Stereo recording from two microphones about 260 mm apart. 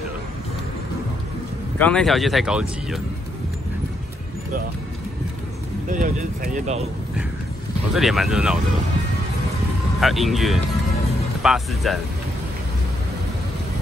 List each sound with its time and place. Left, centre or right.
1.8 s speech: centre
5.9 s speech: right
7.9 s speech: centre
9.9 s speech: centre